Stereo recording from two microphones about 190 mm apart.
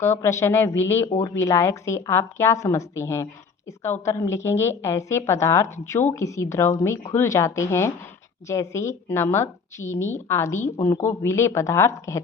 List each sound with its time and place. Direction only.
0.0 s a woman's voice: 15° left (ahead or behind)